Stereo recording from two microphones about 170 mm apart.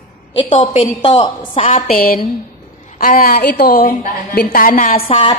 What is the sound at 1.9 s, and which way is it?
A woman's voice, 60° left (ahead or behind).